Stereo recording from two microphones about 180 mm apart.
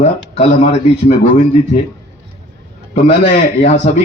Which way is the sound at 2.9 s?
40° left (ahead or behind).